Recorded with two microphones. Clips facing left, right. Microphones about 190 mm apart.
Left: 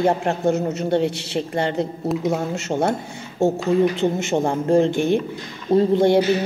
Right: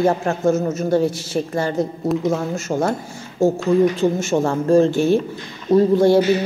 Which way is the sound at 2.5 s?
25° left (ahead or behind).